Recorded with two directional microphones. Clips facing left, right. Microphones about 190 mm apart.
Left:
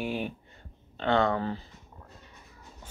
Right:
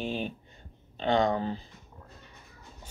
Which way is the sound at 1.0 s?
15° right (ahead or behind).